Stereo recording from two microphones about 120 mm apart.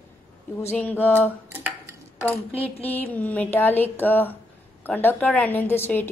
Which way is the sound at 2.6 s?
15° left (ahead or behind).